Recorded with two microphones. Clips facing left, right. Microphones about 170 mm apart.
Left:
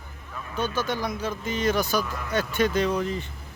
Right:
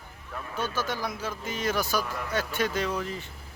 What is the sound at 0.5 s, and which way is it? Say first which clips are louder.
Speech: left 4 dB; 5° right (ahead or behind).